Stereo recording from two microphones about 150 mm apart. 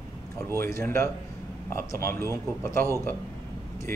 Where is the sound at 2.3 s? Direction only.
15° left (ahead or behind).